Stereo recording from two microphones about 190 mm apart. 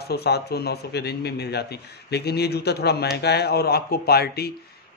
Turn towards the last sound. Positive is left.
turn(degrees=55)  # may be behind; listen again after turning